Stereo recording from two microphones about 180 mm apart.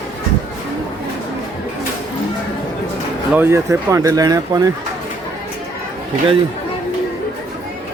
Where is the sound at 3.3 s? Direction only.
15° right (ahead or behind).